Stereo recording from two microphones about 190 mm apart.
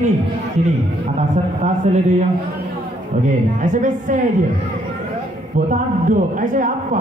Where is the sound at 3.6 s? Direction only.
45° right (ahead or behind).